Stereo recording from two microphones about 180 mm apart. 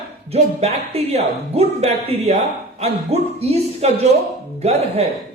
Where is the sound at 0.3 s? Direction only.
35° right (ahead or behind).